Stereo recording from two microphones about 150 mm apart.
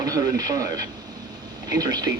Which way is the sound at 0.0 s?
25° right (ahead or behind).